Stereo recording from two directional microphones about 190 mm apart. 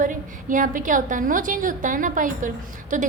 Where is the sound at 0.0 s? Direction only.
45° right (ahead or behind).